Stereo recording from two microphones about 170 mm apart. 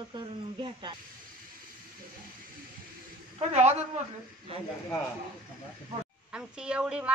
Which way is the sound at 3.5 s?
40° right (ahead or behind).